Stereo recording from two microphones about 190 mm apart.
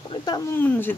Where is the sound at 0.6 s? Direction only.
10° left (ahead or behind).